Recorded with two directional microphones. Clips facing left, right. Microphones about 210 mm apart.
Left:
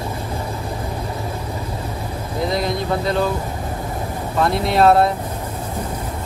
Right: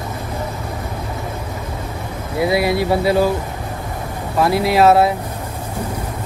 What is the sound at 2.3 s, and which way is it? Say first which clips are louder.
Speech: right 5 dB; 5° right (ahead or behind).